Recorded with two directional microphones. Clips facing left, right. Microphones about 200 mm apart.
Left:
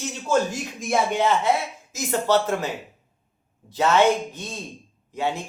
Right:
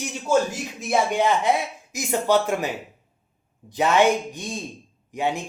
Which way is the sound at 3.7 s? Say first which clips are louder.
Even; 15° right (ahead or behind).